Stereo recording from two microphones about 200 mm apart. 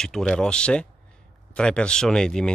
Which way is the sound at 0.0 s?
Centre (ahead or behind).